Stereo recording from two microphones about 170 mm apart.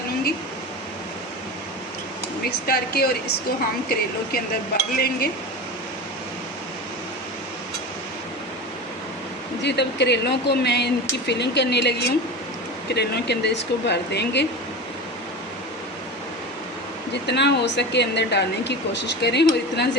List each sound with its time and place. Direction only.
2.6 s speech: 65° left (ahead or behind)
4.9 s speech: 65° left (ahead or behind)
9.6 s speech: 90° left
17.2 s speech: 85° left